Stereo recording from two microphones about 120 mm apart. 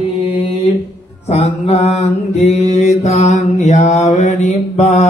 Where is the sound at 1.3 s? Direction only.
65° left (ahead or behind).